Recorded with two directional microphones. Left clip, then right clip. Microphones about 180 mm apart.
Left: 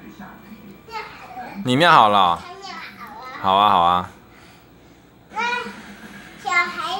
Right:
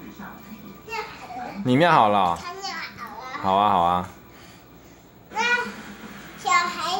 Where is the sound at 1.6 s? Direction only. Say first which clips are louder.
Left 4 dB; 5° right (ahead or behind).